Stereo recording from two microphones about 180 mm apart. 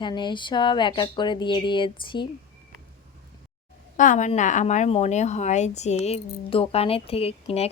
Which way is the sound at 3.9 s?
45° left (ahead or behind).